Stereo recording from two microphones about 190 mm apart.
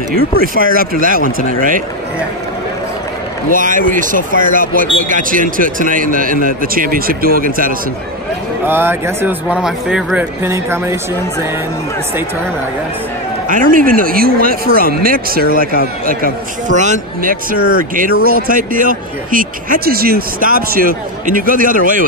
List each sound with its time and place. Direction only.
0.1 s speech: 50° right (ahead or behind)
3.5 s speech: 45° right (ahead or behind)
8.6 s speech: 10° right (ahead or behind)
13.5 s speech: 45° right (ahead or behind)